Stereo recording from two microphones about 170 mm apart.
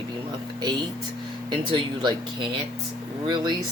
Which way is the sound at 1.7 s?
30° right (ahead or behind).